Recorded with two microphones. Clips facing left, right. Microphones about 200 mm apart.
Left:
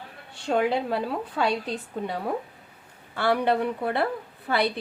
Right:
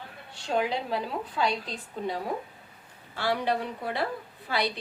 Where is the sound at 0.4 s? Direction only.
55° left (ahead or behind).